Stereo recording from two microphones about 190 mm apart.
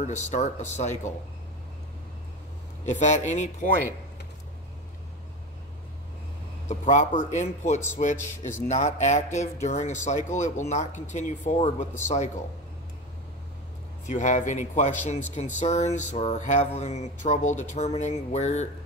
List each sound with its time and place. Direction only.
0.0 s speech: 40° left (ahead or behind)
2.8 s speech: 40° left (ahead or behind)
6.7 s speech: 40° left (ahead or behind)
14.0 s speech: 40° left (ahead or behind)